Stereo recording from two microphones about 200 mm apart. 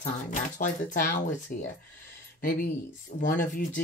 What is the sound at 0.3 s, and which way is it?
Speech, 45° left (ahead or behind).